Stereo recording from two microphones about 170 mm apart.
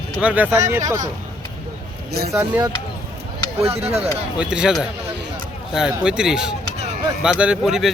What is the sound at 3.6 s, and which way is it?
Speech, 35° right (ahead or behind).